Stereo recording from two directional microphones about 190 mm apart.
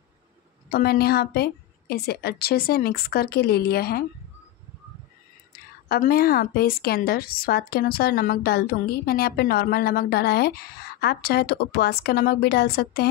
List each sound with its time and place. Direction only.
0.7 s a woman's voice: 55° left (ahead or behind)
5.5 s a woman's voice: 50° left (ahead or behind)